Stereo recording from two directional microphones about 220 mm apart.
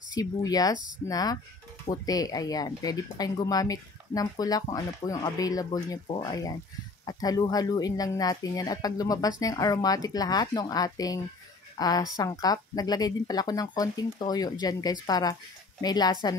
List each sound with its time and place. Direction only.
0.1 s speech: 15° left (ahead or behind)